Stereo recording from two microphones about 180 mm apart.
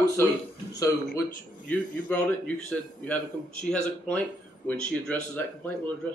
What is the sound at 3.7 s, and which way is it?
Speech, 10° left (ahead or behind).